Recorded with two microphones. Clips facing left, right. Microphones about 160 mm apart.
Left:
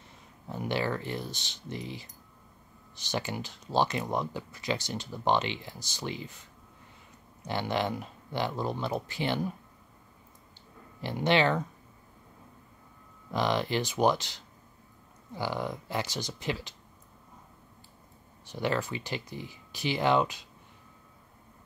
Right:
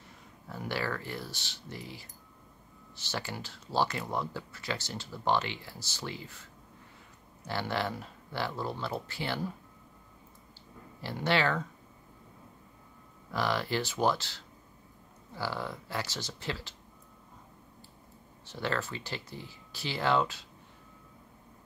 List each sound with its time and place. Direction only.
0.5 s speech: 20° left (ahead or behind)
11.0 s speech: 20° left (ahead or behind)
13.3 s speech: 20° left (ahead or behind)
18.4 s speech: 15° left (ahead or behind)